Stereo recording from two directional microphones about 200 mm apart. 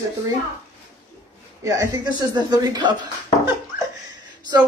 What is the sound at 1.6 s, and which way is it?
Speech, 15° right (ahead or behind).